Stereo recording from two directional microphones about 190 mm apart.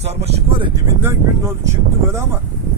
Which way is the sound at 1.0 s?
15° right (ahead or behind).